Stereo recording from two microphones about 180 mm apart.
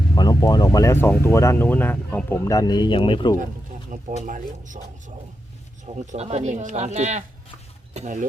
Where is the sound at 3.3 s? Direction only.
45° right (ahead or behind).